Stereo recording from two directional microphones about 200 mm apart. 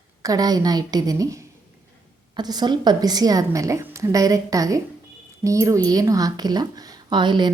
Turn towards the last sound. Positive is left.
turn(degrees=-20)  # may be behind; listen again after turning